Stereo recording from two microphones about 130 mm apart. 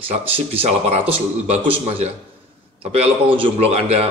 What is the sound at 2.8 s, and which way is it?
A man's voice, 50° right (ahead or behind).